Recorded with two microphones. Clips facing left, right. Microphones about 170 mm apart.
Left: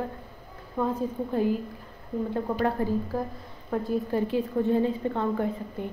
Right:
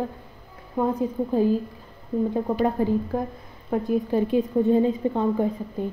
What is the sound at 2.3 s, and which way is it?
A woman's voice, 15° right (ahead or behind).